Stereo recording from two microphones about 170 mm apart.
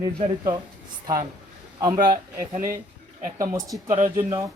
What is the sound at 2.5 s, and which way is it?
Speech, 50° right (ahead or behind).